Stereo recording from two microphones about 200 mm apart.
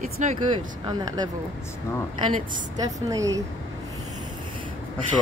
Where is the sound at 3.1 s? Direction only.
15° right (ahead or behind).